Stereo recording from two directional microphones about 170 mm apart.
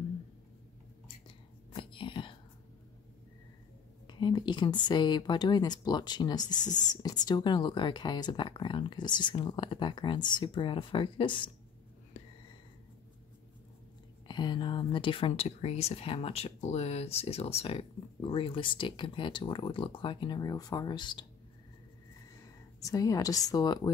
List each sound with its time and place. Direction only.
1.0 s whispering: 30° left (ahead or behind)
4.1 s speech: 25° left (ahead or behind)
6.5 s speech: 45° left (ahead or behind)
6.9 s speech: 25° left (ahead or behind)
14.2 s speech: 25° left (ahead or behind)
22.8 s speech: 20° left (ahead or behind)